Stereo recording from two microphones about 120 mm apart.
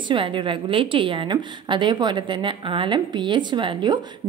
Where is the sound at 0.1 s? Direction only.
45° right (ahead or behind).